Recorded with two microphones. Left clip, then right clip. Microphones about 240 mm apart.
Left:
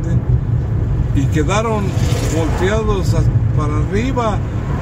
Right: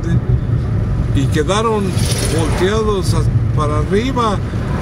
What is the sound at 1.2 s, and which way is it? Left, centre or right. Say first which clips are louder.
Speech: right 1 dB; centre.